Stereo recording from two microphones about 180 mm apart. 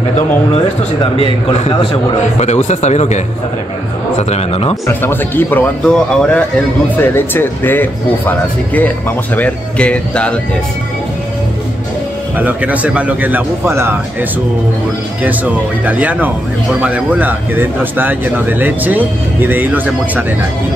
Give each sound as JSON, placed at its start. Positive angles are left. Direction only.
{"t": 1.5, "sound": "a man's voice", "side_deg": 35}
{"t": 4.3, "sound": "a man's voice", "side_deg": 35}
{"t": 5.0, "sound": "speech", "side_deg": 10}
{"t": 12.4, "sound": "speech", "side_deg": -10}
{"t": 15.8, "sound": "speech", "side_deg": -10}